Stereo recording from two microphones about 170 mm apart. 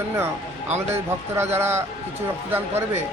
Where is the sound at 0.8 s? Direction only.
15° right (ahead or behind).